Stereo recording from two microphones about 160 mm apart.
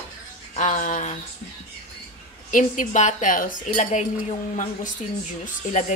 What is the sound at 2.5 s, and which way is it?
Speech, 55° left (ahead or behind).